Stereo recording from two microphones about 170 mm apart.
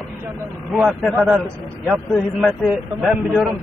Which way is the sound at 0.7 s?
Centre (ahead or behind).